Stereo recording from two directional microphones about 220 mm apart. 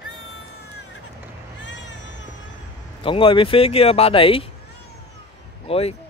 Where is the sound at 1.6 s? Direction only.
55° left (ahead or behind).